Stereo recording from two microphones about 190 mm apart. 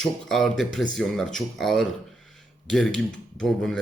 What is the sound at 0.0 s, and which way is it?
Speech, 5° left (ahead or behind).